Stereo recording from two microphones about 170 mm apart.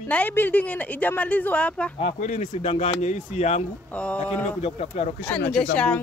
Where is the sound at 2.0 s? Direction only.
45° left (ahead or behind).